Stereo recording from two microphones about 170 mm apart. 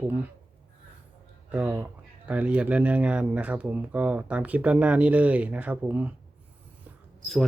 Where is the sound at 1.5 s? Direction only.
10° right (ahead or behind).